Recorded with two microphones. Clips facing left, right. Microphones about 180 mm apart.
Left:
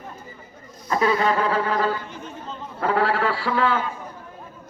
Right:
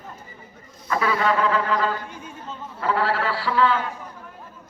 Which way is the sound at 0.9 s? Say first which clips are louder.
Left 2 dB; 35° left (ahead or behind).